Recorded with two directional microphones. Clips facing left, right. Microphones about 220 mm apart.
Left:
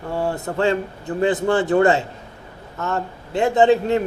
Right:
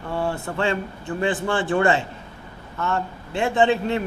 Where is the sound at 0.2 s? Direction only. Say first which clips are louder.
Left 4 dB; 40° left (ahead or behind).